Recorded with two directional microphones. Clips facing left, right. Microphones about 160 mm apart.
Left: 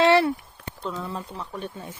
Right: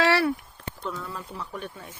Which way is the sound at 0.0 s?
20° left (ahead or behind).